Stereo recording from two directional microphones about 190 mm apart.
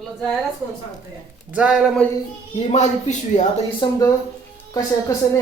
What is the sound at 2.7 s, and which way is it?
Speech, 40° left (ahead or behind).